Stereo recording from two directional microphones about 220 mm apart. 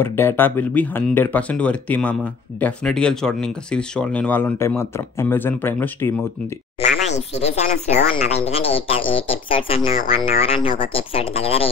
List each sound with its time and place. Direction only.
0.0 s speech: 10° left (ahead or behind)
6.8 s speech: 30° left (ahead or behind)